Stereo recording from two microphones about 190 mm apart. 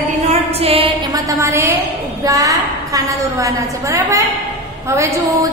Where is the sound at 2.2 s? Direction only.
20° right (ahead or behind).